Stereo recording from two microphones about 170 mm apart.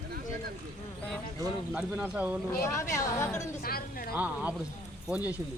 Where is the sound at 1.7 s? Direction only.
5° right (ahead or behind).